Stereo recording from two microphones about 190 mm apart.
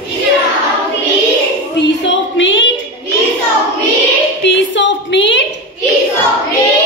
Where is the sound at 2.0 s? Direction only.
75° left (ahead or behind).